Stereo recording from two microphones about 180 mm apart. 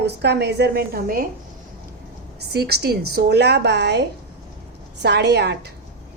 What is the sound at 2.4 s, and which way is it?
A woman's voice, 65° right (ahead or behind).